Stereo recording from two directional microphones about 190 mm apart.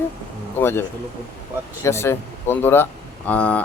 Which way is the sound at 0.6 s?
10° left (ahead or behind).